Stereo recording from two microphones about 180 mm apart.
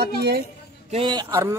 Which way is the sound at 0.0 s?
65° right (ahead or behind).